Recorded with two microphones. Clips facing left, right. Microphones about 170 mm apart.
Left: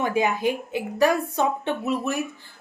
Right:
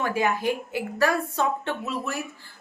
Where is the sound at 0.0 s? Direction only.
20° left (ahead or behind).